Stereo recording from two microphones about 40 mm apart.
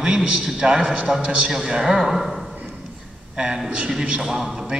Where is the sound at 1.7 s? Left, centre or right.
Centre.